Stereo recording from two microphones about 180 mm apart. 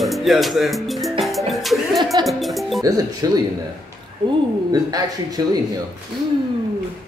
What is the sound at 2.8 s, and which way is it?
Speech, 20° right (ahead or behind).